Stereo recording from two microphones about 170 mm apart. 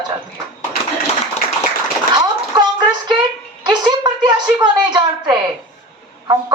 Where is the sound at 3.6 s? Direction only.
25° right (ahead or behind).